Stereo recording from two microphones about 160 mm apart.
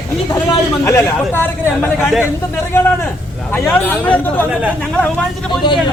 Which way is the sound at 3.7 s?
10° left (ahead or behind).